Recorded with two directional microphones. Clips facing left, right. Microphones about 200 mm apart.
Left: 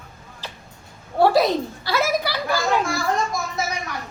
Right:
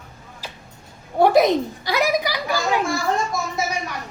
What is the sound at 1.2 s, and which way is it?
A woman's voice, 20° right (ahead or behind).